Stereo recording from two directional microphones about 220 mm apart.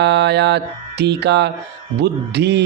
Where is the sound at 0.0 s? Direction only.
50° right (ahead or behind).